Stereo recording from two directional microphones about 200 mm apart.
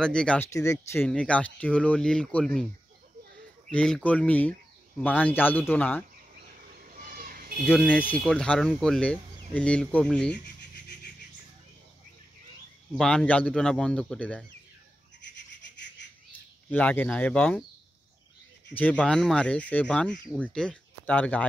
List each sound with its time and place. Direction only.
0.0 s speech: 5° left (ahead or behind)
3.7 s speech: 5° left (ahead or behind)
6.4 s a sound: 45° right (ahead or behind)
7.6 s speech: 10° left (ahead or behind)
10.3 s rub: 55° left (ahead or behind)
12.9 s speech: 5° left (ahead or behind)
15.3 s a sound: 60° left (ahead or behind)
16.7 s speech: 5° left (ahead or behind)
18.7 s speech: 5° left (ahead or behind)